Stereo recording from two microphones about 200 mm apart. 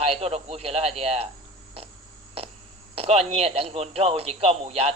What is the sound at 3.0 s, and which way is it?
Speech, 30° right (ahead or behind).